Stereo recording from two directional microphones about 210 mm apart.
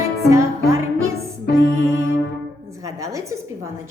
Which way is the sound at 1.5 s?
15° right (ahead or behind).